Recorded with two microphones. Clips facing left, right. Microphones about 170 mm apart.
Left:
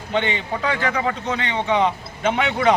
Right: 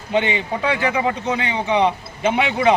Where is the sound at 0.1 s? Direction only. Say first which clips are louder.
Right 3 dB; 10° right (ahead or behind).